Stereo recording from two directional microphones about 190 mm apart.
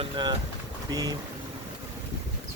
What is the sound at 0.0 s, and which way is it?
Speech, 25° right (ahead or behind).